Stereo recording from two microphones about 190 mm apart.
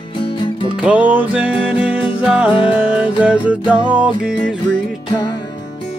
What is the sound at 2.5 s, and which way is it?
Music, 30° left (ahead or behind).